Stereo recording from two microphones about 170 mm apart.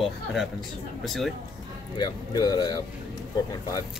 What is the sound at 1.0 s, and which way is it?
Speech, centre (ahead or behind).